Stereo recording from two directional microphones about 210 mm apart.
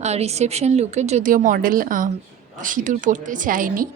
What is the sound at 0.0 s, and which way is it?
A woman's voice, 30° right (ahead or behind).